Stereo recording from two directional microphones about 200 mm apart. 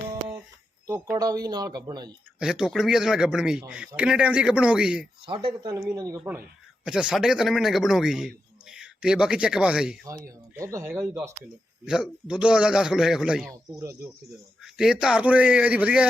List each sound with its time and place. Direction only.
1.1 s speech: 15° right (ahead or behind)
2.4 s a man's voice: 5° right (ahead or behind)
5.2 s a man's voice: 25° right (ahead or behind); by 10.1 s 5° right (ahead or behind)
10.5 s a man's voice: 15° right (ahead or behind)
13.5 s speech: 15° right (ahead or behind)
14.6 s a man's voice: centre (ahead or behind)